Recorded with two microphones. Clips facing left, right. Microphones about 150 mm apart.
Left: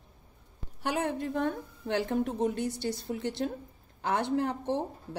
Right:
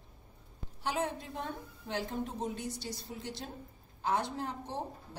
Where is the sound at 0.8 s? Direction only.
60° left (ahead or behind).